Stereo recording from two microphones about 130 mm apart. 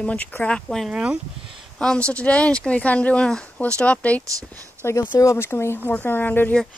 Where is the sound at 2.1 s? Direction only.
10° left (ahead or behind).